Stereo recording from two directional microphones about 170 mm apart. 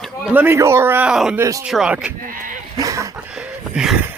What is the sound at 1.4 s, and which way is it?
Speech, 20° right (ahead or behind).